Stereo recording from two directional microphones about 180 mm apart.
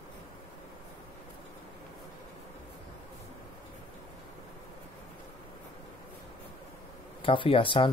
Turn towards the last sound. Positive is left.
turn(degrees=30)  # may be behind; listen again after turning